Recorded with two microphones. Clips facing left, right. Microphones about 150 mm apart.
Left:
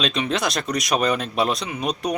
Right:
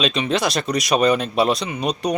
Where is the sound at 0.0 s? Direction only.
Centre (ahead or behind).